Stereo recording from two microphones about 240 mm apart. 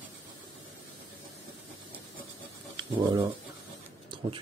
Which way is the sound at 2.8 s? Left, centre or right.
Centre.